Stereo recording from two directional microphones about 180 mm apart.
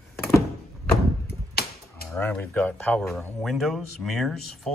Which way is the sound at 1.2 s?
60° left (ahead or behind).